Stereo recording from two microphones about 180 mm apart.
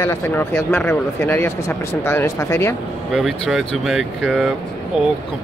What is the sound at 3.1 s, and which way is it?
Speech, centre (ahead or behind).